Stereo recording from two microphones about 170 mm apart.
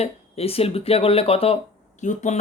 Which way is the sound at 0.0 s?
35° left (ahead or behind).